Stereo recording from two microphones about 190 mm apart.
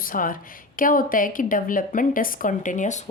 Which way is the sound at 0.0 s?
45° left (ahead or behind).